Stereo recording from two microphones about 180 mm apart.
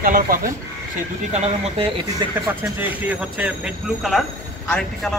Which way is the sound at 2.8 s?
10° right (ahead or behind).